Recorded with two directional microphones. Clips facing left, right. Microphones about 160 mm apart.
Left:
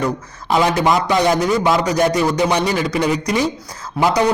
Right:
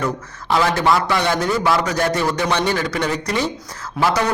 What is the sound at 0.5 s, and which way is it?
Speech, 20° left (ahead or behind).